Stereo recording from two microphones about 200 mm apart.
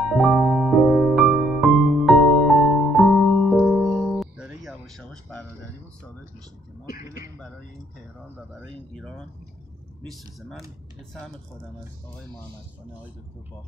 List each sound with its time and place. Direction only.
0.0 s music: centre (ahead or behind)
8.9 s speech: 5° left (ahead or behind)